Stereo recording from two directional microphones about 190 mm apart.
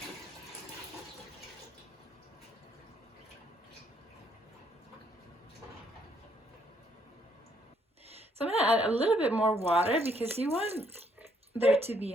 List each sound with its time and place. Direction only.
8.1 s a woman's voice: 30° right (ahead or behind)
9.2 s a woman's voice: 10° right (ahead or behind)
9.6 s speech: 30° right (ahead or behind)